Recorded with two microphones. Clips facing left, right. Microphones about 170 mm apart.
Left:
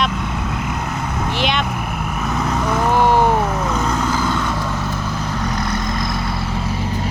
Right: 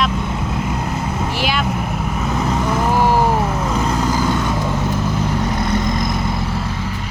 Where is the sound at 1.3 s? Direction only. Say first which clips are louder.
Left 2 dB; 5° right (ahead or behind).